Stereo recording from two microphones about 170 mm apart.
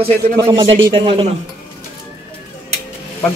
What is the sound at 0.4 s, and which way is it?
Speech, 25° right (ahead or behind).